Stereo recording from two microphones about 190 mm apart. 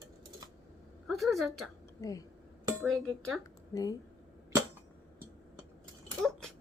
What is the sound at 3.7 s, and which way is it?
Speech, 20° left (ahead or behind).